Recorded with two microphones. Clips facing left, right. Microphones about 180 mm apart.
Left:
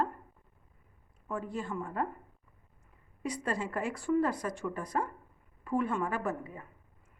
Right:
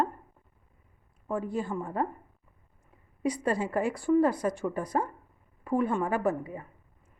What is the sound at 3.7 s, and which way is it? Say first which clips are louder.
Speech: right 5 dB; 35° right (ahead or behind).